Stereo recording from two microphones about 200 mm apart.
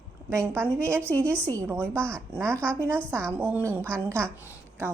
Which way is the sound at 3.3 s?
10° right (ahead or behind).